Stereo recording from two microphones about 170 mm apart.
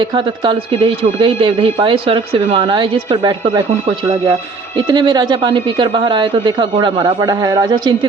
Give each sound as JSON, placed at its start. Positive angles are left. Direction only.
{"t": 0.0, "sound": "speech", "side_deg": -25}
{"t": 4.8, "sound": "speech", "side_deg": -25}